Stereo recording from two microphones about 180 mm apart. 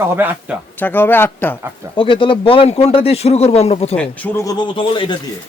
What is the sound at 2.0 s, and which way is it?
Speech, 25° left (ahead or behind).